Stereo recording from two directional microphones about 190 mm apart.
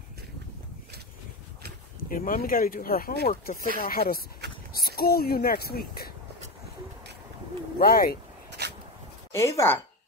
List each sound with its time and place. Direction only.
2.0 s speech: 45° left (ahead or behind)
7.8 s speech: 50° left (ahead or behind)
8.5 s a sound: 60° right (ahead or behind)
9.3 s speech: 15° left (ahead or behind)